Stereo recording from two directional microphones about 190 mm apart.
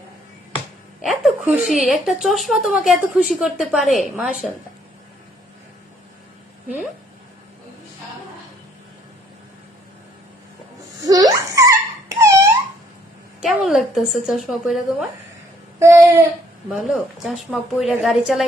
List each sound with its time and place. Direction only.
1.0 s a woman's voice: centre (ahead or behind)
11.0 s laughter: 20° right (ahead or behind)
13.4 s a woman's voice: centre (ahead or behind)
15.8 s a sound: 15° right (ahead or behind)
16.6 s a woman's voice: centre (ahead or behind)